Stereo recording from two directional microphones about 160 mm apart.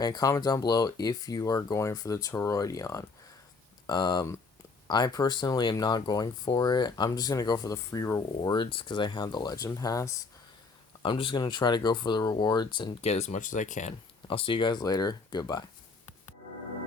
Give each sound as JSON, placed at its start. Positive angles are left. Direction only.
{"t": 0.0, "sound": "speech", "side_deg": 25}
{"t": 8.4, "sound": "speech", "side_deg": 30}
{"t": 11.0, "sound": "speech", "side_deg": 30}
{"t": 13.0, "sound": "speech", "side_deg": 40}
{"t": 14.3, "sound": "speech", "side_deg": 35}